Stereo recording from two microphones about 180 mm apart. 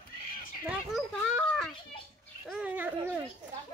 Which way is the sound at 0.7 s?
5° right (ahead or behind).